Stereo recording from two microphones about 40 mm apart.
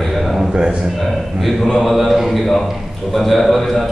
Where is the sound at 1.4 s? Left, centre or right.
Centre.